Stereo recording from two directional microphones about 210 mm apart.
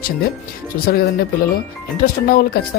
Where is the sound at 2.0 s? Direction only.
45° left (ahead or behind).